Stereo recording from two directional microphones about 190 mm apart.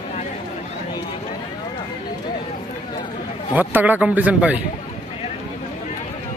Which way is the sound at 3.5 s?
10° right (ahead or behind).